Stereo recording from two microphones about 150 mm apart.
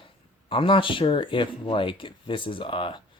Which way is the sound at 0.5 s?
35° left (ahead or behind).